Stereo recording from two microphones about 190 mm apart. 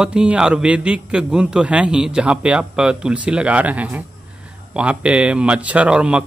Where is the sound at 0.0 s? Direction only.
5° right (ahead or behind).